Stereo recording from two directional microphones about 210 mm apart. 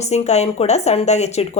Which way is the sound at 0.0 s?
30° left (ahead or behind).